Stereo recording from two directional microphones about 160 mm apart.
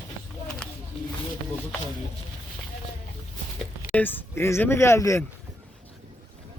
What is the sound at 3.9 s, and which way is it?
Speech, 10° left (ahead or behind).